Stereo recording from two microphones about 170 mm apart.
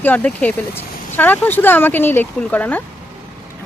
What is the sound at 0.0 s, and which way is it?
Speech, 10° left (ahead or behind).